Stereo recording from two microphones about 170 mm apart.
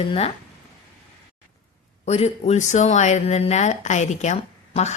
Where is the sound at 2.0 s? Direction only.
40° left (ahead or behind).